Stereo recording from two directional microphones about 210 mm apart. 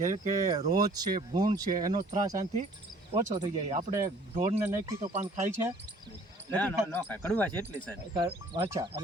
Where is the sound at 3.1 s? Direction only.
30° right (ahead or behind).